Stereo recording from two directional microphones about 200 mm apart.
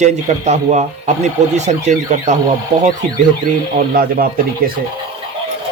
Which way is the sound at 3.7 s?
45° right (ahead or behind).